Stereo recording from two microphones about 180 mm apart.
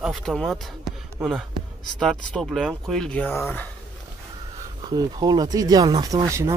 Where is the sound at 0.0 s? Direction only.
Centre (ahead or behind).